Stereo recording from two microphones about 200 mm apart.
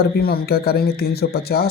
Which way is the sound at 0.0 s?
50° left (ahead or behind).